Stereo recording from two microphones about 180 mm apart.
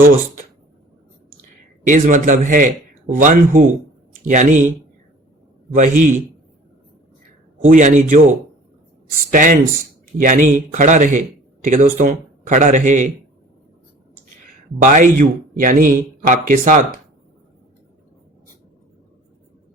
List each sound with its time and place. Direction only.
1.8 s speech: 45° right (ahead or behind)
5.7 s speech: 45° right (ahead or behind)
7.6 s speech: 45° right (ahead or behind)
9.3 s speech: 45° right (ahead or behind)
14.8 s speech: 45° right (ahead or behind)